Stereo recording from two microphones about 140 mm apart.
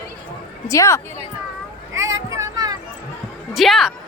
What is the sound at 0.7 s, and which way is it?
Speech, 20° left (ahead or behind).